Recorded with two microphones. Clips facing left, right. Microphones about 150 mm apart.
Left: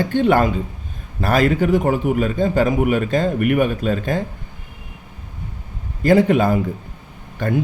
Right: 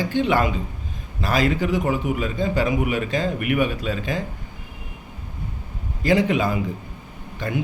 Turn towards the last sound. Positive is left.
turn(degrees=55)  # may be behind; listen again after turning